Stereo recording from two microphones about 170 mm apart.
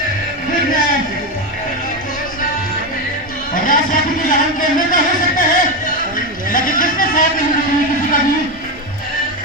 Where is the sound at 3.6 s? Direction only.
55° left (ahead or behind).